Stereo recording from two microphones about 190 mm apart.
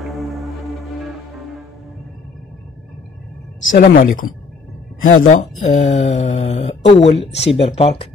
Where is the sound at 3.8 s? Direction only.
45° left (ahead or behind).